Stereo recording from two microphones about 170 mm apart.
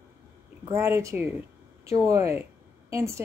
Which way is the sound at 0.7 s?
15° right (ahead or behind).